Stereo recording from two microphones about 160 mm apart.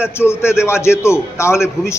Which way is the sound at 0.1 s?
15° left (ahead or behind).